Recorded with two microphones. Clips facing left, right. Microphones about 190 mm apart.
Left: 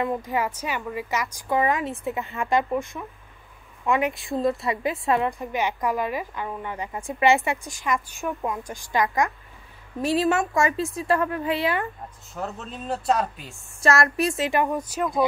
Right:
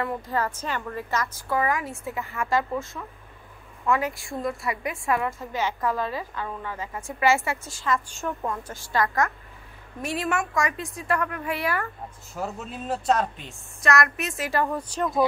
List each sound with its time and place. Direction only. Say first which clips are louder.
0.0 s a woman's voice: left 2 dB; 15° left (ahead or behind)
12.4 s speech: even; 5° right (ahead or behind)
13.7 s a woman's voice: left 3 dB; 30° left (ahead or behind)
14.4 s a woman's voice: right 1 dB; 15° left (ahead or behind)